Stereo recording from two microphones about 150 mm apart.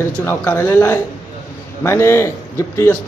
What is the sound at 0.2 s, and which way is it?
A man's voice, 15° left (ahead or behind).